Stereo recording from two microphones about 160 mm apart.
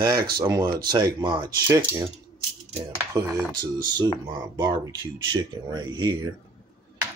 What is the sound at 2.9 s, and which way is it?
Speech, 20° right (ahead or behind).